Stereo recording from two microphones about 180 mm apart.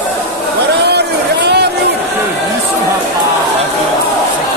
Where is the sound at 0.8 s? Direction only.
65° right (ahead or behind).